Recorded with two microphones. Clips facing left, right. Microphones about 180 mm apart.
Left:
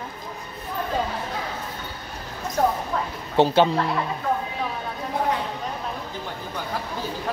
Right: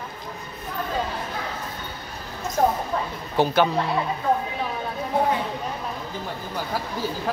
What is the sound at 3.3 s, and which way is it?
Speech, 25° left (ahead or behind).